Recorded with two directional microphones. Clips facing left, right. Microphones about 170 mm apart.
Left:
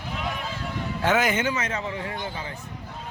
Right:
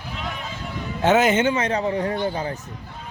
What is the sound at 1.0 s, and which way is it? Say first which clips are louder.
A man's voice: right 6 dB; 25° right (ahead or behind).